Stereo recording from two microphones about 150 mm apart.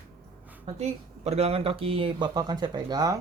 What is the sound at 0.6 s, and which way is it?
Speech, 45° right (ahead or behind).